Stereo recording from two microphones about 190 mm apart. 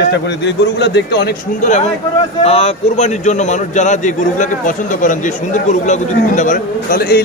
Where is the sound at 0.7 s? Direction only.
60° left (ahead or behind).